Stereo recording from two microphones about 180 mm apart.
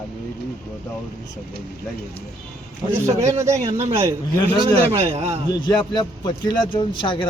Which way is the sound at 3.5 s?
35° right (ahead or behind).